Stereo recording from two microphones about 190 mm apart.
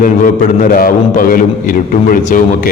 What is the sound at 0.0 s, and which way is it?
A man's voice, 45° left (ahead or behind).